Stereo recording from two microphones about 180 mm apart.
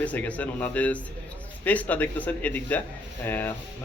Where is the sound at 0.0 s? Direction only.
10° left (ahead or behind).